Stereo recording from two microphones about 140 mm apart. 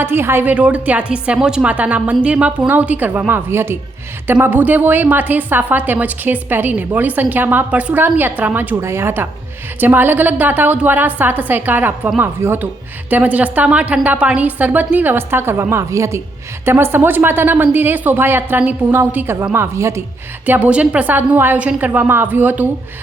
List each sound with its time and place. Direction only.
0.0 s a woman's voice: 15° right (ahead or behind)